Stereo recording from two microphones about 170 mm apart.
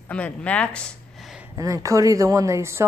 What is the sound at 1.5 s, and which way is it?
Speech, 20° right (ahead or behind).